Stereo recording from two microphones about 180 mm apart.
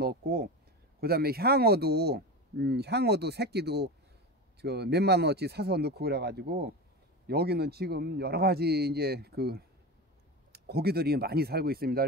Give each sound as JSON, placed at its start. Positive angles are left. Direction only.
{"t": 0.0, "sound": "speech", "side_deg": -55}